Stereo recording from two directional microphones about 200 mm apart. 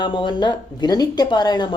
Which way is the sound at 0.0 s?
20° left (ahead or behind).